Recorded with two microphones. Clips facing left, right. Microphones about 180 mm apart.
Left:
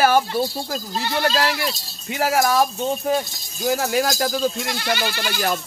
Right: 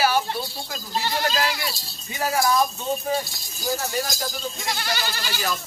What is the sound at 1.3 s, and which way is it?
Speech, 70° left (ahead or behind).